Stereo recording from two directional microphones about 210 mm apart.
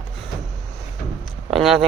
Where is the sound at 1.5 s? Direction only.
Centre (ahead or behind).